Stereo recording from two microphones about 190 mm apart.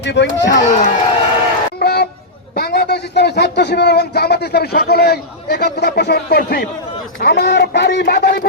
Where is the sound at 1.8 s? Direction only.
55° left (ahead or behind).